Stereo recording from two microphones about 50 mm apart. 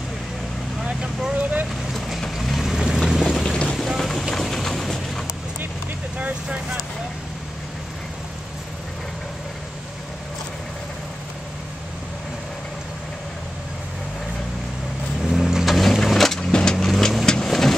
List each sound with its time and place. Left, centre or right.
0.8 s vehicle: centre
1.3 s vehicle: right
2.3 s vehicle: centre
3.1 s boat: centre
3.7 s a sound: centre
6.1 s vehicle: right
15.2 s vehicle: centre
15.7 s a sound: centre
16.3 s vehicle: centre
16.7 s vehicle: centre